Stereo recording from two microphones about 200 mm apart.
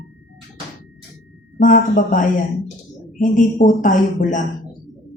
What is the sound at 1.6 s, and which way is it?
Speech, 40° left (ahead or behind).